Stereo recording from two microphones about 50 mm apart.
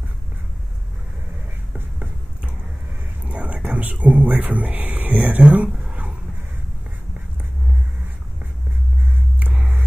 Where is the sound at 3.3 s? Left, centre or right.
Right.